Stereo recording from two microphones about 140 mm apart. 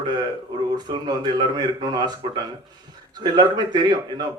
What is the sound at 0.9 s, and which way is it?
A man's voice, 30° right (ahead or behind).